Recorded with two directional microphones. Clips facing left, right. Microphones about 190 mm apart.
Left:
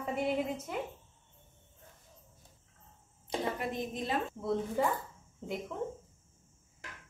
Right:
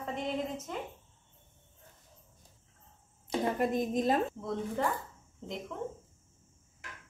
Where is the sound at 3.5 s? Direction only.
45° right (ahead or behind).